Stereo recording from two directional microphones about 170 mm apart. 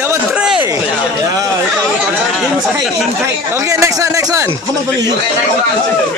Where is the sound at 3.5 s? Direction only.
15° right (ahead or behind).